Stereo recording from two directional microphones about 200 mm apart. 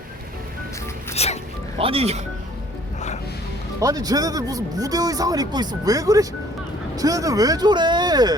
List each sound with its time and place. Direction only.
1.1 s speech: 30° left (ahead or behind)
1.8 s speech: 30° right (ahead or behind)
3.8 s speech: 20° right (ahead or behind)